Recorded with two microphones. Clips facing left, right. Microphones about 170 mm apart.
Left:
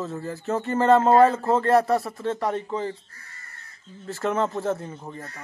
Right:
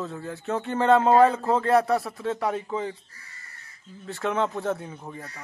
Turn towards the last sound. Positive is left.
turn(degrees=0)  # may be behind; listen again after turning